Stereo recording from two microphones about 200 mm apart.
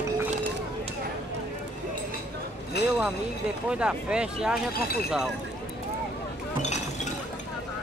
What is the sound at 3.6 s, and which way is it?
Speech, 5° right (ahead or behind).